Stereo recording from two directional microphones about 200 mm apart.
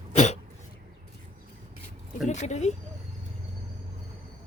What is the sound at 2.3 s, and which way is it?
Speech, 35° left (ahead or behind).